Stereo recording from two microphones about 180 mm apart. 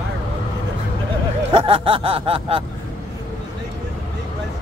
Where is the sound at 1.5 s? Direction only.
30° right (ahead or behind).